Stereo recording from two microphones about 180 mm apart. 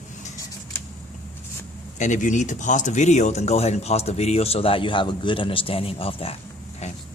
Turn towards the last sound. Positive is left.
turn(degrees=30)  # may be behind; listen again after turning